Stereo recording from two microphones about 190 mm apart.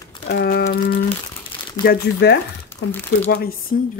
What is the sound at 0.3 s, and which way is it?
A woman's voice, 55° left (ahead or behind).